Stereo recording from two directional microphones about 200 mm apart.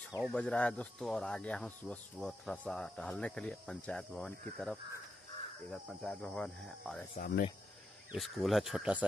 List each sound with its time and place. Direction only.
0.2 s speech: 5° left (ahead or behind)
7.2 s speech: 50° left (ahead or behind)
8.1 s speech: centre (ahead or behind)